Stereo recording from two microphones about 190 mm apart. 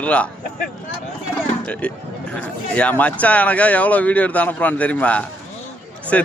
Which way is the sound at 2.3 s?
5° left (ahead or behind).